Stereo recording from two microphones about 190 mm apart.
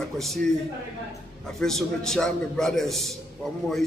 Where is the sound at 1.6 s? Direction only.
5° left (ahead or behind).